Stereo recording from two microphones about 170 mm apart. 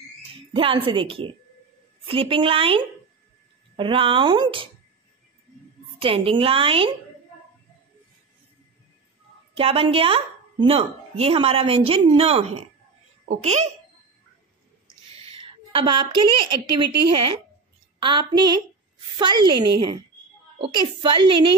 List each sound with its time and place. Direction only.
0.3 s speech: 30° right (ahead or behind)
5.9 s speech: 35° right (ahead or behind)
9.6 s a child's voice: 35° right (ahead or behind)
15.1 s a sound: 35° right (ahead or behind)
17.9 s speech: 30° right (ahead or behind)